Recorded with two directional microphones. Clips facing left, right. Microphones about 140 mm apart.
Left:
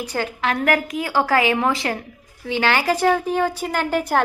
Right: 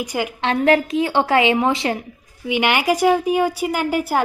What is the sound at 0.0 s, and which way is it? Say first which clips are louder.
Speech: right 2 dB; 15° right (ahead or behind).